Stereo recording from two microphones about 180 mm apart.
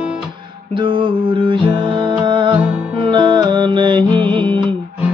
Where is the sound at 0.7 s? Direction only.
30° right (ahead or behind).